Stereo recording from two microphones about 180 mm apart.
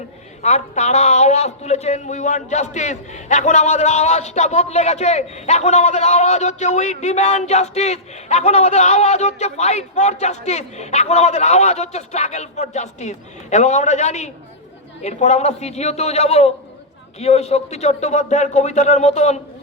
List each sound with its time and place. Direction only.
0.4 s a man's voice: 40° left (ahead or behind)